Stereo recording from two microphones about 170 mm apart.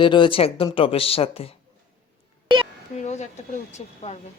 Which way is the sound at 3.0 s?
45° left (ahead or behind).